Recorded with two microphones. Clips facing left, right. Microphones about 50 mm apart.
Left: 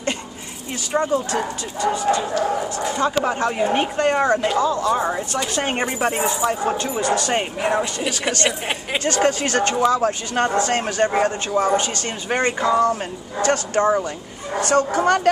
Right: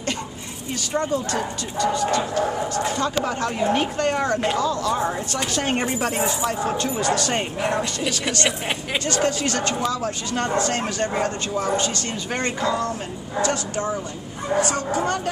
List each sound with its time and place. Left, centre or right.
1.1 s speech: left
8.5 s speech: centre
9.0 s speech: left
13.4 s speech: left